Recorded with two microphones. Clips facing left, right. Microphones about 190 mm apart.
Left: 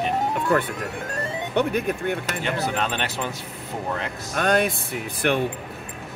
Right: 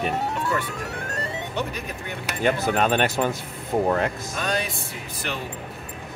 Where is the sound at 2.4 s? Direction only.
45° right (ahead or behind).